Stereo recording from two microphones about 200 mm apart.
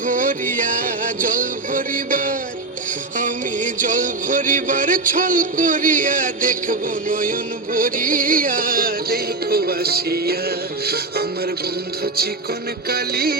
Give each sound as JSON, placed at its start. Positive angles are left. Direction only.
{"t": 0.0, "sound": "music", "side_deg": -40}
{"t": 12.9, "sound": "music", "side_deg": -50}